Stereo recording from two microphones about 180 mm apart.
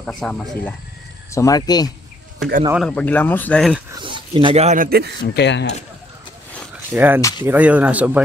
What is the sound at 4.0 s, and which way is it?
Speech, 25° right (ahead or behind).